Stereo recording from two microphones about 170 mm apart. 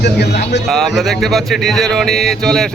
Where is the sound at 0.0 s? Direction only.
75° left (ahead or behind).